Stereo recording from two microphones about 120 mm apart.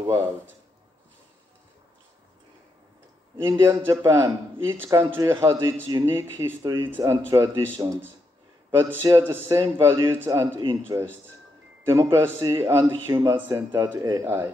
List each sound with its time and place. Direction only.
0.0 s a man's voice: 25° right (ahead or behind)
3.4 s a man's voice: 20° right (ahead or behind)
13.6 s a man's voice: 40° right (ahead or behind); by 14.5 s 20° right (ahead or behind)